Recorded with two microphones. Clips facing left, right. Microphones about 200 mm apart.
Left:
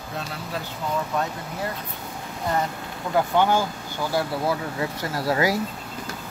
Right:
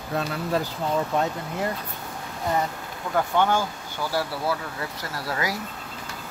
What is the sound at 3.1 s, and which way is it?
Speech, 10° left (ahead or behind).